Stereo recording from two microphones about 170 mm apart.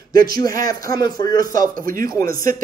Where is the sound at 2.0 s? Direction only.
20° left (ahead or behind).